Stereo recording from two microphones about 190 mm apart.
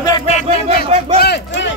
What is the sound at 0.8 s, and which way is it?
Speech, 35° right (ahead or behind).